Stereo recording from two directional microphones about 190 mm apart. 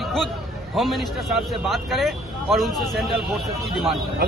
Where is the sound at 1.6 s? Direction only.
Centre (ahead or behind).